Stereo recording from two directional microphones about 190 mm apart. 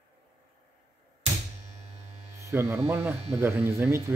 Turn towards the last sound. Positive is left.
turn(degrees=-15)  # may be behind; listen again after turning